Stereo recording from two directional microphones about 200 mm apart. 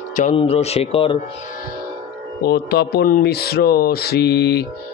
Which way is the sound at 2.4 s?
55° left (ahead or behind).